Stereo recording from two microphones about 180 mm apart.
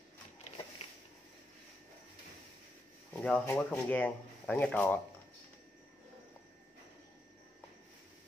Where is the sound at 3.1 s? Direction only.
5° left (ahead or behind).